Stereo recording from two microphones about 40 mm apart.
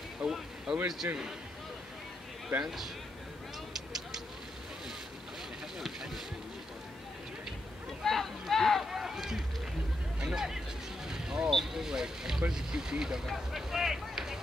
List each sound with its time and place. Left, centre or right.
0.2 s a sound: right
0.8 s speech: centre
2.6 s speech: centre
5.8 s boat: centre
8.0 s a sound: centre
8.9 s run: centre
10.2 s speech: centre
11.1 s vehicle: centre
11.5 s speech: centre